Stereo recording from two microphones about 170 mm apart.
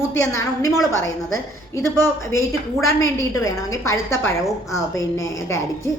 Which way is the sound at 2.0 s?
15° left (ahead or behind).